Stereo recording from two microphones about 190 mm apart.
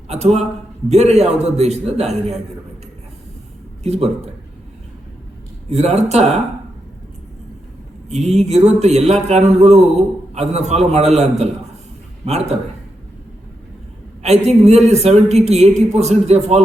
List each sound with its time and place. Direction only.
0.1 s a man's voice: 35° right (ahead or behind)
3.8 s a man's voice: 35° right (ahead or behind)
5.6 s a man's voice: 35° right (ahead or behind)
8.1 s a man's voice: 35° right (ahead or behind)
14.2 s a man's voice: 35° right (ahead or behind)